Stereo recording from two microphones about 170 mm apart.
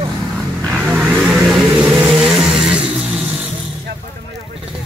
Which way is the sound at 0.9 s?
Centre (ahead or behind).